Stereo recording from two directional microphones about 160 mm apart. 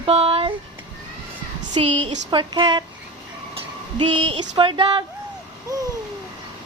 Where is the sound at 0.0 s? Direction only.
35° right (ahead or behind).